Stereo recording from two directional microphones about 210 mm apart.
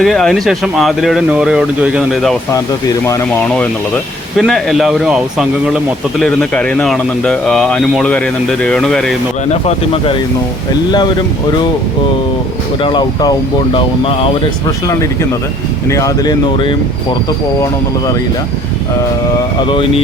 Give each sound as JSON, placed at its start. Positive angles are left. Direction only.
{"t": 0.0, "sound": "speech", "side_deg": 0}
{"t": 3.1, "sound": "speech", "side_deg": 10}
{"t": 4.4, "sound": "speech", "side_deg": 0}
{"t": 9.5, "sound": "speech", "side_deg": 30}
{"t": 12.8, "sound": "speech", "side_deg": 20}
{"t": 15.9, "sound": "speech", "side_deg": 15}
{"t": 19.6, "sound": "speech", "side_deg": 25}